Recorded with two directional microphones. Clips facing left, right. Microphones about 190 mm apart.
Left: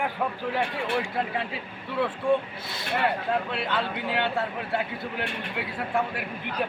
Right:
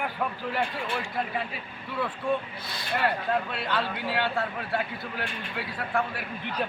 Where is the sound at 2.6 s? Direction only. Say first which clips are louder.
Even; 25° left (ahead or behind).